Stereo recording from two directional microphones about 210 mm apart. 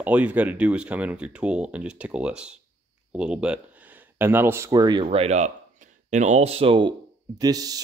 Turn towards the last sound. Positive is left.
turn(degrees=-15)  # may be behind; listen again after turning